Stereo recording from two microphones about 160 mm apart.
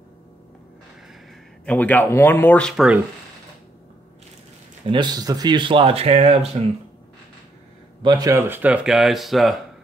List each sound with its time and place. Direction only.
1.7 s speech: 10° left (ahead or behind)
4.9 s speech: 25° right (ahead or behind)
8.0 s speech: 25° right (ahead or behind); by 9.6 s centre (ahead or behind)